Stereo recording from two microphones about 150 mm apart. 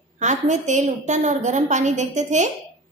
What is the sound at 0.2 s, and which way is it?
A woman's voice, 55° right (ahead or behind).